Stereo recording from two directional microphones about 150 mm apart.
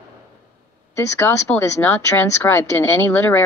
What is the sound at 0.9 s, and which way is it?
A woman's voice, 15° left (ahead or behind).